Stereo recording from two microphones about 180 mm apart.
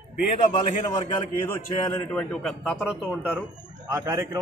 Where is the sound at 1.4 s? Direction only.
15° left (ahead or behind); by 3.4 s 5° right (ahead or behind).